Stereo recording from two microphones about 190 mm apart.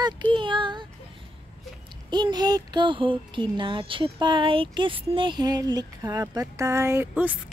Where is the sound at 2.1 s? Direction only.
20° right (ahead or behind).